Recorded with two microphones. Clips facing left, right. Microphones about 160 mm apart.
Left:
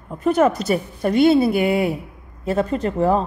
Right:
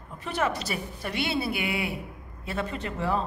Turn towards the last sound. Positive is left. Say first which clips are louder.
# left 10 dB
turn(degrees=40)  # may be behind; listen again after turning